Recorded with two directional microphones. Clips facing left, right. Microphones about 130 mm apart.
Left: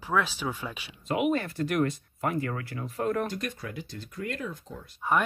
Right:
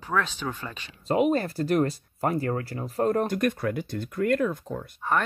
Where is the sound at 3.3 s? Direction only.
55° right (ahead or behind).